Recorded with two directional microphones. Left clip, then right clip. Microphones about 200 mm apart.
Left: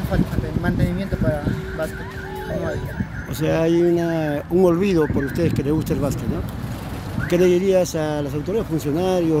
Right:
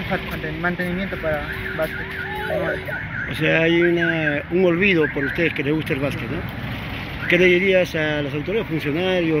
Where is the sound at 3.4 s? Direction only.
20° left (ahead or behind).